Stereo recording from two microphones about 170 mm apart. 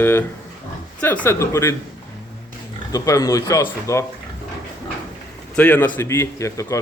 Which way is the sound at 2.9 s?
20° left (ahead or behind).